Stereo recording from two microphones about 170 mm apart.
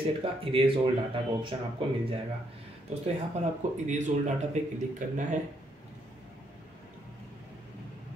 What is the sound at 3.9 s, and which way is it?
Speech, 45° right (ahead or behind).